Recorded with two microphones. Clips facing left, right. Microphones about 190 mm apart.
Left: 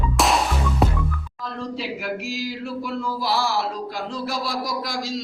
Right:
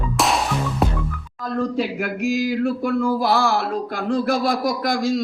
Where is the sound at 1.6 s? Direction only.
50° right (ahead or behind).